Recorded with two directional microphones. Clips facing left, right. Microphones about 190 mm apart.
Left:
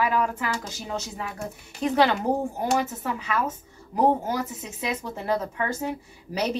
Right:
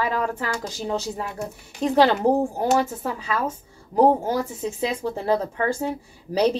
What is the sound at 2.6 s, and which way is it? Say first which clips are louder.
Speech: right 4 dB; 30° right (ahead or behind).